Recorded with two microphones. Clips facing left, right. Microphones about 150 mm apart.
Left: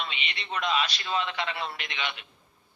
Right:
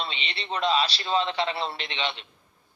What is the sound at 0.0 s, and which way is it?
A man's voice, 30° right (ahead or behind).